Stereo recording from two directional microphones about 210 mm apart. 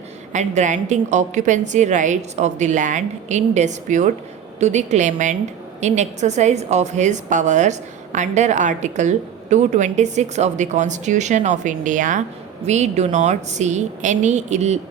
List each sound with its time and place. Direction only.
0.3 s a woman's voice: 35° right (ahead or behind)